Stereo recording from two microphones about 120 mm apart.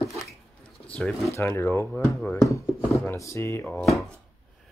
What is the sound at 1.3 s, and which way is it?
Speech, 20° left (ahead or behind).